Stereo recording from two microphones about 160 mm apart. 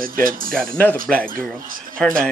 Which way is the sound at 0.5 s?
5° left (ahead or behind).